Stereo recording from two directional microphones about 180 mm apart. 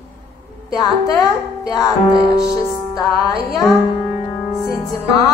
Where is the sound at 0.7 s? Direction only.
20° left (ahead or behind).